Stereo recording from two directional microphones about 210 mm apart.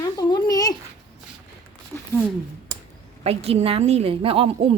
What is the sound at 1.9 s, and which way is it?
Speech, 5° left (ahead or behind).